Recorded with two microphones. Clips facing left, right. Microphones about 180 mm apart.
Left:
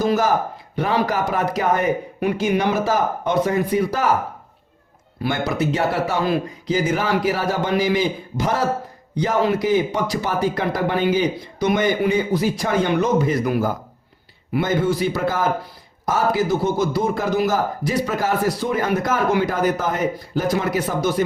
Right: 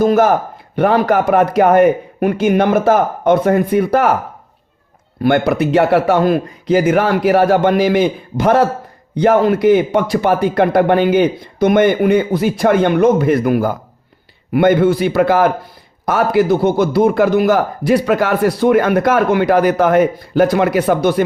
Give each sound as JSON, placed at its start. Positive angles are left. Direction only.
{"t": 0.0, "sound": "a man's voice", "side_deg": -55}
{"t": 5.2, "sound": "a man's voice", "side_deg": -60}